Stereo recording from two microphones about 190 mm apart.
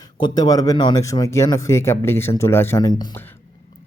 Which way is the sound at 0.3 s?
20° left (ahead or behind).